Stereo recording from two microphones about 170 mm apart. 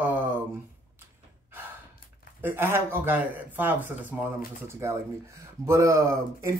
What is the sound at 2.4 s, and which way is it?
Speech, 10° right (ahead or behind).